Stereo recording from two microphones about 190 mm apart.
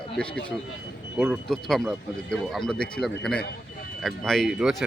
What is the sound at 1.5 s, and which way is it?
Speech, centre (ahead or behind).